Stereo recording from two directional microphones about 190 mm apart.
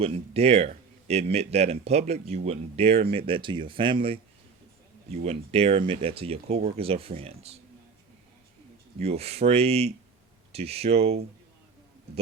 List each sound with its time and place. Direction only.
0.0 s speech: 30° right (ahead or behind)
5.1 s speech: 35° right (ahead or behind)
9.0 s speech: 35° right (ahead or behind)